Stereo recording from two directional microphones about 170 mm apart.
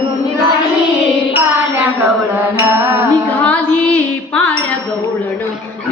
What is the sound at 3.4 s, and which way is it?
Music, 10° left (ahead or behind).